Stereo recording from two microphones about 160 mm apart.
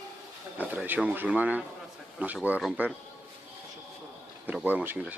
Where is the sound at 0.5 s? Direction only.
10° right (ahead or behind).